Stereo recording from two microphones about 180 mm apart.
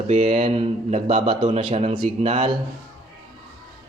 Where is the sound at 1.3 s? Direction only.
25° right (ahead or behind).